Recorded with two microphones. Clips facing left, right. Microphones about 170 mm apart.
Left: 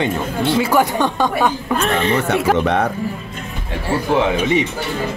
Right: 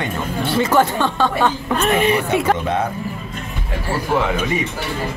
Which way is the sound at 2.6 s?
70° left (ahead or behind).